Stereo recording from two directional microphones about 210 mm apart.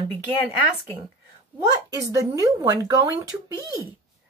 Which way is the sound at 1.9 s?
15° right (ahead or behind).